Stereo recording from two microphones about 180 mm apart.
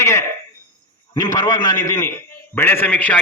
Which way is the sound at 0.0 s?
15° left (ahead or behind).